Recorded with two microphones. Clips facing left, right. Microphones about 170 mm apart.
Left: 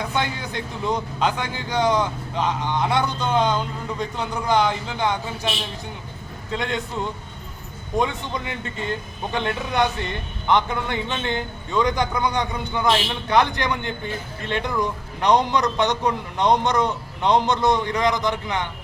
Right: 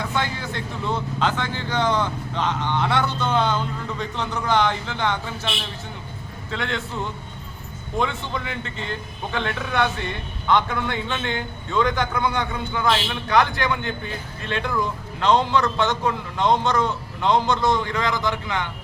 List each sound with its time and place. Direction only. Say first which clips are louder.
0.0 s speech: left 1 dB; 20° left (ahead or behind)
6.5 s a man's voice: left 2 dB; 15° left (ahead or behind)